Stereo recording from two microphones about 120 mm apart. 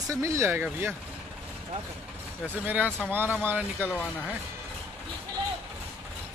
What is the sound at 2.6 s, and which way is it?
Speech, 15° right (ahead or behind).